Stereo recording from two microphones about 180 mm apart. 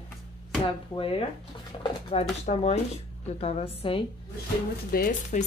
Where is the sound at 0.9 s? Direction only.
30° left (ahead or behind).